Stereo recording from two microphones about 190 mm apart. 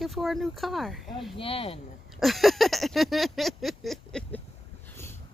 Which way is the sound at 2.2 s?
Centre (ahead or behind).